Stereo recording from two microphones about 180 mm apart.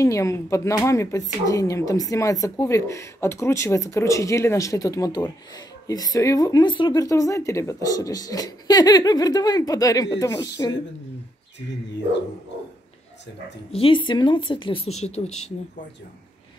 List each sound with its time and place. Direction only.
0.0 s speech: 15° left (ahead or behind)
13.7 s speech: 30° left (ahead or behind)